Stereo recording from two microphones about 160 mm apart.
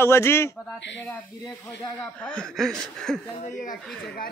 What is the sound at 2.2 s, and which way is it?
Speech, 5° left (ahead or behind).